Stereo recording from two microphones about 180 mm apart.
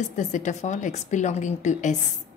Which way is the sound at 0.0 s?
40° left (ahead or behind).